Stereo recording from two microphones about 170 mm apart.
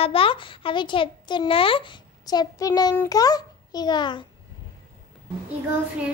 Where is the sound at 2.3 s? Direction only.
20° left (ahead or behind).